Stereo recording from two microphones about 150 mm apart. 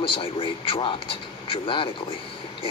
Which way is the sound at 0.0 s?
35° left (ahead or behind).